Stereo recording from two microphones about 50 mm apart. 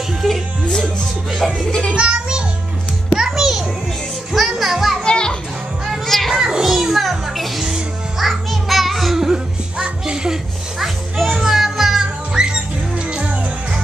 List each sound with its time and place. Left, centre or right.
1.4 s music: centre
2.0 s music: centre
3.2 s music: centre
5.0 s children playing: centre
6.0 s children playing: centre
6.4 s music: centre
9.8 s children playing: right
11.2 s music: centre